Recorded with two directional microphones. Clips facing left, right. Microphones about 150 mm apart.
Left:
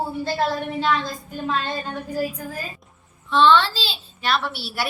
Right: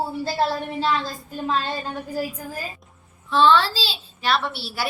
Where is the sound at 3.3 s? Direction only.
5° right (ahead or behind).